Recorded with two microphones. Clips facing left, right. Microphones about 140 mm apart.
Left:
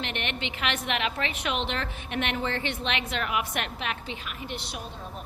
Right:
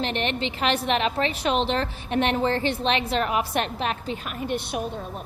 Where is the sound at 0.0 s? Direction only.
35° right (ahead or behind); by 4.8 s 55° right (ahead or behind).